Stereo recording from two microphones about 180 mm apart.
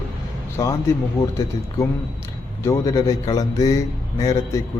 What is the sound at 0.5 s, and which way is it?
Speech, 15° left (ahead or behind).